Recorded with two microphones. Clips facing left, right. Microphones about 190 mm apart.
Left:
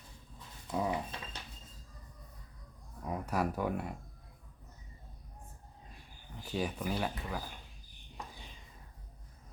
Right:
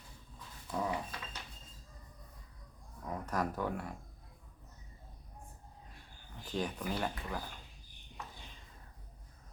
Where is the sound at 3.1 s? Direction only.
10° left (ahead or behind).